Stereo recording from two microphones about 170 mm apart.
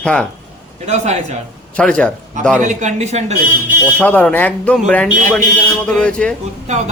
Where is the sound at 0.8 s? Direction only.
40° right (ahead or behind).